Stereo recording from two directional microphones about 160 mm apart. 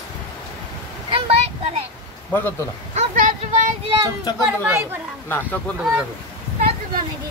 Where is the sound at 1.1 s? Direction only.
35° right (ahead or behind).